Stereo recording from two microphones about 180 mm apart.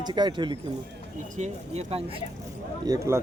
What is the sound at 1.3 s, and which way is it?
Speech, 40° right (ahead or behind).